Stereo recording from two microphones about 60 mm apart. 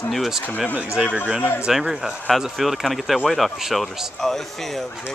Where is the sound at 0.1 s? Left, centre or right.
Centre.